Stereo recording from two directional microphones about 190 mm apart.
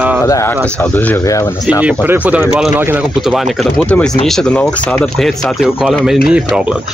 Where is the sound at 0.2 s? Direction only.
15° left (ahead or behind).